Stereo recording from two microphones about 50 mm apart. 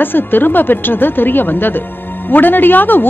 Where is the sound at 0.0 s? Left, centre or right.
Left.